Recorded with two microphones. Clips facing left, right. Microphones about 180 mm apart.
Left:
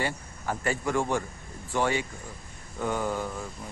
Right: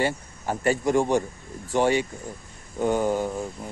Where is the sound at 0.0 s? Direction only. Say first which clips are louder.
Right 5 dB; 25° right (ahead or behind).